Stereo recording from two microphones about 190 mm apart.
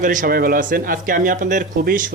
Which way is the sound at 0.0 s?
45° right (ahead or behind).